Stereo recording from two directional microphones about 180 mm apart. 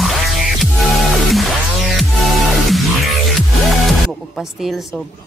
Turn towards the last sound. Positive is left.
turn(degrees=0)  # may be behind; listen again after turning